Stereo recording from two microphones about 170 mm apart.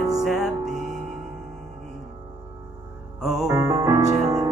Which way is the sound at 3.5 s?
20° right (ahead or behind).